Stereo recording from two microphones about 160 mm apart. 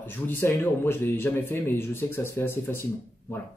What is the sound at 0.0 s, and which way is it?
A man's voice, 15° left (ahead or behind).